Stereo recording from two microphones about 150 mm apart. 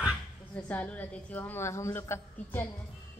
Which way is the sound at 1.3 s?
15° left (ahead or behind).